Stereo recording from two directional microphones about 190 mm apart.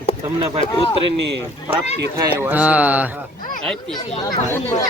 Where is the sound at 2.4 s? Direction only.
10° right (ahead or behind).